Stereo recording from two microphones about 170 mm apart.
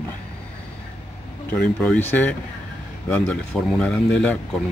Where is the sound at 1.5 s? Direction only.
10° left (ahead or behind).